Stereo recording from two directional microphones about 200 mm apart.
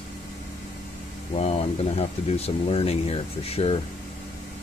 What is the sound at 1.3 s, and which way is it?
Speech, 30° left (ahead or behind).